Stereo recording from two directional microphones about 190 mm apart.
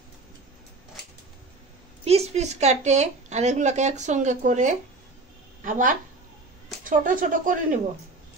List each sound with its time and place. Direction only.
2.0 s a woman's voice: 35° right (ahead or behind)